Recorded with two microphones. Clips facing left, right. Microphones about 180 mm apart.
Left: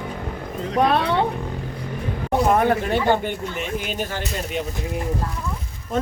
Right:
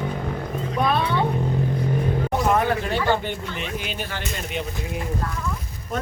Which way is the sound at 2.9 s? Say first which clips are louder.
Left 1 dB; 15° left (ahead or behind).